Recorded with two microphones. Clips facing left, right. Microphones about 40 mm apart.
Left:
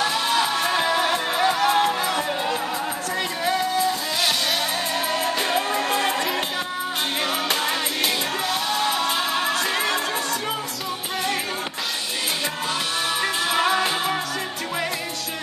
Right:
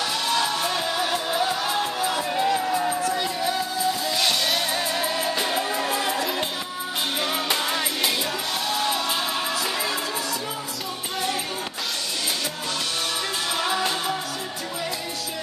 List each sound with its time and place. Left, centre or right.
0.1 s music: centre
0.6 s music: left
2.4 s music: left
3.1 s music: left
4.2 s music: centre
5.5 s music: left
5.9 s music: left
7.6 s music: centre
9.0 s music: left
9.5 s music: left